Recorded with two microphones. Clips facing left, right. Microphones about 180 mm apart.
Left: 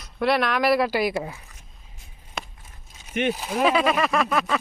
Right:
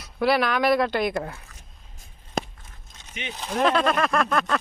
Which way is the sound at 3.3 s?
5° left (ahead or behind).